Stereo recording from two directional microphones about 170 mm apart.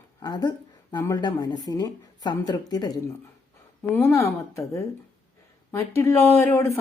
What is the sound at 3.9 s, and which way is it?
Speech, 15° left (ahead or behind).